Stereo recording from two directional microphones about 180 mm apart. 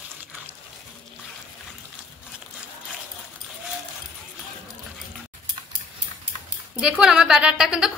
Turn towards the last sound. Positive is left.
turn(degrees=-5)  # may be behind; listen again after turning